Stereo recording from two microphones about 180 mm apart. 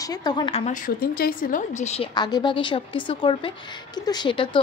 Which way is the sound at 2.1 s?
25° left (ahead or behind).